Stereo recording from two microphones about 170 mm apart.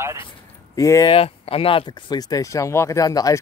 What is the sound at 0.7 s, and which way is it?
Speech, 20° left (ahead or behind).